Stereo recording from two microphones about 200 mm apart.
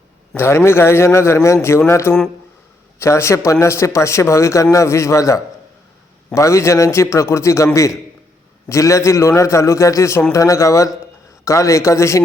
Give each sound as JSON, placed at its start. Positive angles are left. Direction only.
{"t": 0.3, "sound": "a man's voice", "side_deg": 15}